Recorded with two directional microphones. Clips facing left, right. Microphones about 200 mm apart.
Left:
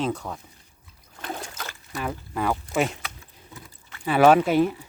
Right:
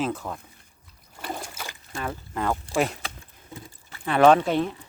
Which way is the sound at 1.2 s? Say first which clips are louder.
Even; 10° right (ahead or behind).